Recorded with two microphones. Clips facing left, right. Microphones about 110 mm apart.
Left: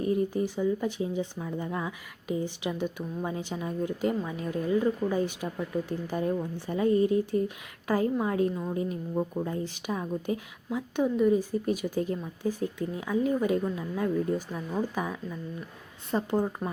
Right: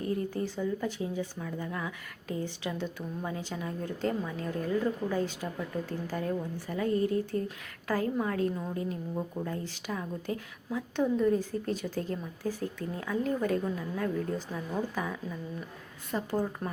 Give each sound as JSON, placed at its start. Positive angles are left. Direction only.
{"t": 0.0, "sound": "a woman's voice", "side_deg": 20}